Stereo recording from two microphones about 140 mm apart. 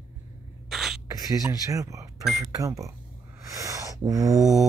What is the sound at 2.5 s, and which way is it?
Speech, 25° right (ahead or behind).